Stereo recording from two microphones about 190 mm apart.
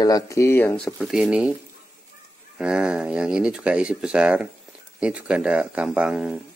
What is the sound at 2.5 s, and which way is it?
Speech, 5° right (ahead or behind).